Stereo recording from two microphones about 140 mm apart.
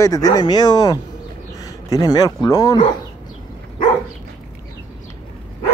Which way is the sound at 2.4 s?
25° left (ahead or behind).